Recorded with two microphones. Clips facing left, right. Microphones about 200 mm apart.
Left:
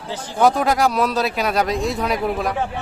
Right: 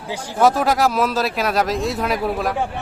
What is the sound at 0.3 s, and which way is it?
Speech, centre (ahead or behind).